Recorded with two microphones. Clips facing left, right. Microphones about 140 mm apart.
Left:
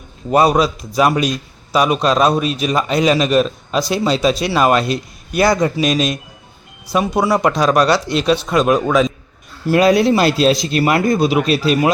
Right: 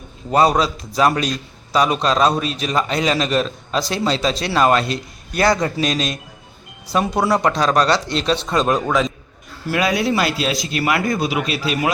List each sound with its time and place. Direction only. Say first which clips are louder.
0.3 s a man's voice: left 3 dB; 15° left (ahead or behind)
9.6 s speech: left 7 dB; 30° left (ahead or behind)